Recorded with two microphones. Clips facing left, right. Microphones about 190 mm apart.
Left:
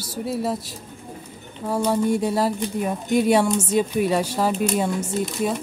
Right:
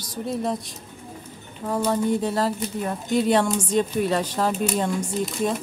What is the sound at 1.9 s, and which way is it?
Speech, 10° left (ahead or behind).